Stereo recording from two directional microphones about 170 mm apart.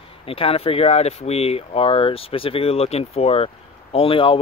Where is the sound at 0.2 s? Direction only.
35° left (ahead or behind).